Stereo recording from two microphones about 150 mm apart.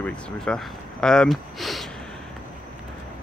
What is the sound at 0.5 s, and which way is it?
Speech, 5° left (ahead or behind).